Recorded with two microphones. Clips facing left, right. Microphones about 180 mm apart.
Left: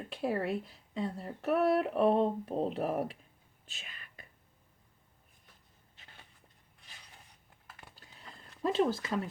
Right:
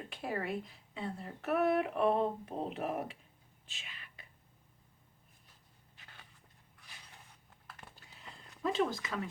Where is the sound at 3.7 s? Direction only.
40° left (ahead or behind).